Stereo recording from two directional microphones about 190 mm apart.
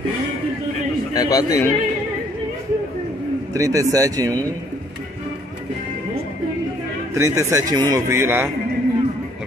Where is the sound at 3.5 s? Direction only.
15° right (ahead or behind).